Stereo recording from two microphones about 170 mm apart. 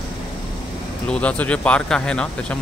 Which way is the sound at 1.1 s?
5° left (ahead or behind).